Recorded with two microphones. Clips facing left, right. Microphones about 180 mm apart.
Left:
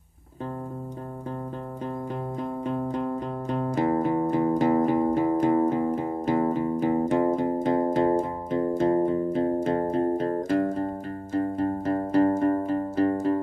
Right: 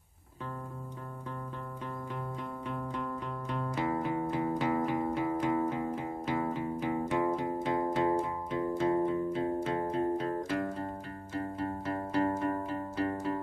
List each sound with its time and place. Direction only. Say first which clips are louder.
2.6 s music: left 9 dB; 40° left (ahead or behind)